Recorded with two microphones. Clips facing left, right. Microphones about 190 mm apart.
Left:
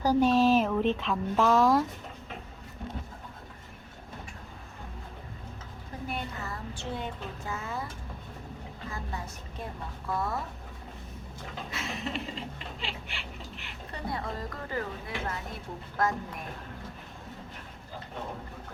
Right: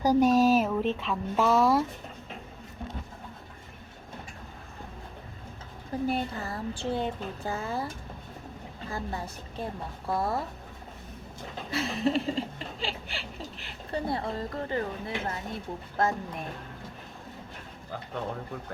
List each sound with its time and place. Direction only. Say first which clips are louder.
0.0 s a sound: right 2 dB; 15° right (ahead or behind)
0.3 s chuckle: even; 40° right (ahead or behind)
0.5 s speech: even; 5° right (ahead or behind)
6.1 s chuckle: right 4 dB; 35° right (ahead or behind)
8.9 s chuckle: right 5 dB; 30° right (ahead or behind)
11.7 s chuckle: right 9 dB; 35° right (ahead or behind)
16.0 s speech: right 2 dB; 25° right (ahead or behind)